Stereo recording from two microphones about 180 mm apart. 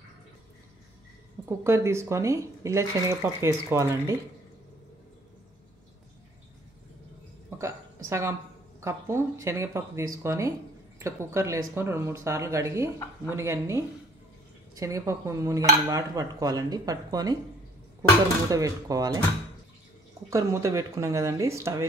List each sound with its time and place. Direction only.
1.4 s speech: 15° right (ahead or behind)
7.5 s a sound: 15° right (ahead or behind)
8.8 s speech: 15° right (ahead or behind)
14.8 s dishes: 15° right (ahead or behind)
18.5 s dishes: 20° right (ahead or behind)
20.2 s speech: 15° right (ahead or behind)